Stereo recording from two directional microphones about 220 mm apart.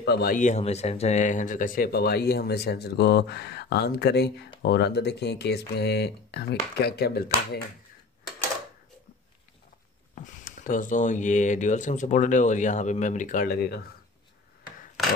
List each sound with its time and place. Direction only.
0.0 s speech: 45° left (ahead or behind)
10.1 s speech: 35° left (ahead or behind)